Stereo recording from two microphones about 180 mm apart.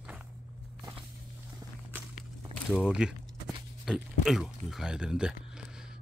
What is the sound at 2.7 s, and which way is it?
Speech, 5° right (ahead or behind).